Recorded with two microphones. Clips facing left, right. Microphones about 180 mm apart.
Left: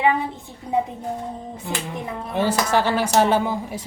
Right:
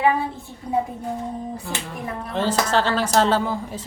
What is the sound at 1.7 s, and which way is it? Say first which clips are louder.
A woman's voice: left 1 dB; 20° left (ahead or behind).